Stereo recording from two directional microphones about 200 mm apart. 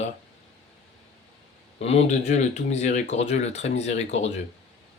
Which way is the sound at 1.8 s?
30° left (ahead or behind).